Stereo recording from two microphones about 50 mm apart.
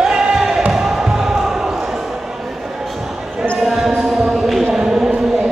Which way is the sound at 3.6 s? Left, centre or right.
Centre.